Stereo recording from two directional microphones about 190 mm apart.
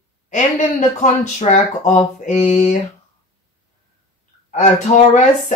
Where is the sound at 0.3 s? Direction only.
40° left (ahead or behind).